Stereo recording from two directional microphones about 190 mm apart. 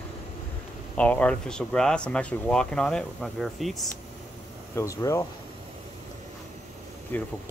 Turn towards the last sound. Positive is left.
turn(degrees=10)  # may be behind; listen again after turning